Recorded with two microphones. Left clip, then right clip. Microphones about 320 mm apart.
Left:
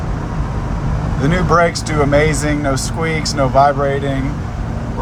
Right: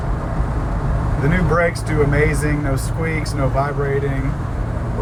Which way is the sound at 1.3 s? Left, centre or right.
Centre.